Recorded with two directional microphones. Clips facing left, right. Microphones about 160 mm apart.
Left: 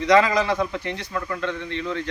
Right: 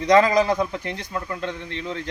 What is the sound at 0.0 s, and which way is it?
A man's voice, 45° right (ahead or behind).